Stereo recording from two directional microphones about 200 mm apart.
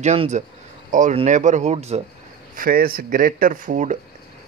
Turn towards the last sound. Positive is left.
turn(degrees=-40)  # may be behind; listen again after turning